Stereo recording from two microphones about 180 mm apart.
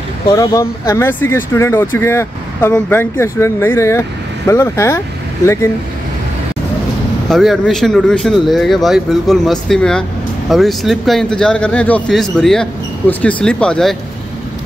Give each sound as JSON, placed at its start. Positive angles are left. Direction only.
{"t": 0.3, "sound": "speech", "side_deg": 20}
{"t": 7.2, "sound": "speech", "side_deg": 0}